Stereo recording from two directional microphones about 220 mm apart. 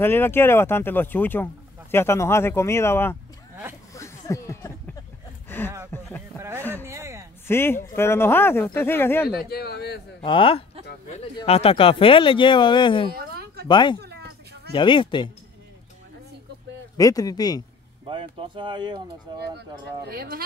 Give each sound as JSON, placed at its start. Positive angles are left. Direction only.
{"t": 0.0, "sound": "speech", "side_deg": 10}
{"t": 3.9, "sound": "a sound", "side_deg": 15}
{"t": 6.9, "sound": "a sound", "side_deg": -15}
{"t": 7.4, "sound": "speech", "side_deg": 10}
{"t": 9.4, "sound": "speech", "side_deg": 45}
{"t": 10.2, "sound": "speech", "side_deg": 25}
{"t": 13.1, "sound": "a sound", "side_deg": -45}
{"t": 13.7, "sound": "speech", "side_deg": 20}
{"t": 14.0, "sound": "a sound", "side_deg": -50}
{"t": 14.7, "sound": "speech", "side_deg": 20}
{"t": 16.9, "sound": "speech", "side_deg": 15}
{"t": 18.0, "sound": "speech", "side_deg": -25}
{"t": 20.1, "sound": "speech", "side_deg": -45}